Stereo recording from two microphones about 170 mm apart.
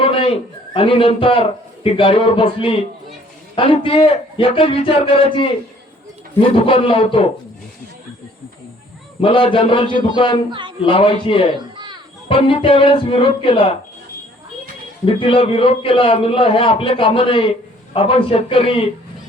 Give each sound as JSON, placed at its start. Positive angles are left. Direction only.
{"t": 0.0, "sound": "a sound", "side_deg": 35}
{"t": 0.7, "sound": "a man's voice", "side_deg": 30}
{"t": 6.7, "sound": "a man's voice", "side_deg": 30}
{"t": 9.2, "sound": "a man's voice", "side_deg": 30}
{"t": 15.0, "sound": "a man's voice", "side_deg": 30}